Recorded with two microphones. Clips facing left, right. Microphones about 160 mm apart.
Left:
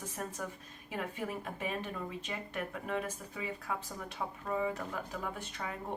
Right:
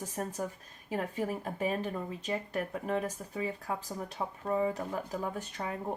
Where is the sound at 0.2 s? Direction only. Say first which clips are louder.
Right 5 dB; 40° right (ahead or behind).